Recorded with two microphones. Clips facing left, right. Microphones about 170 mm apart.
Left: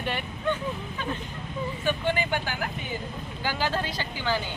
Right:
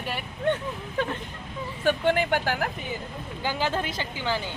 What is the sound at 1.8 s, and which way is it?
Speech, 70° right (ahead or behind).